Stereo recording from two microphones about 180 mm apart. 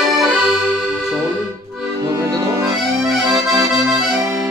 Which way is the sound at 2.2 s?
15° right (ahead or behind).